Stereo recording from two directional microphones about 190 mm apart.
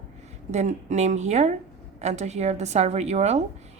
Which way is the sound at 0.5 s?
40° right (ahead or behind).